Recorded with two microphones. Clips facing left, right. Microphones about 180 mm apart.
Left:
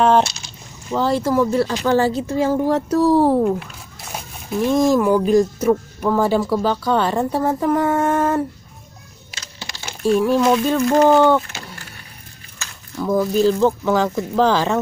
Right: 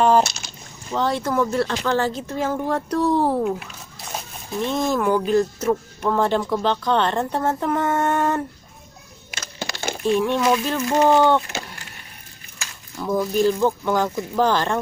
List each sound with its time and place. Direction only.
0.0 s a sound: centre (ahead or behind)
0.9 s speech: 5° left (ahead or behind)
9.3 s a sound: 50° right (ahead or behind)
10.0 s speech: 5° left (ahead or behind)
13.0 s speech: centre (ahead or behind)
14.5 s speech: 10° left (ahead or behind)